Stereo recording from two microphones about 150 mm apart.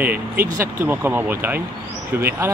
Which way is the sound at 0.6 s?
15° right (ahead or behind).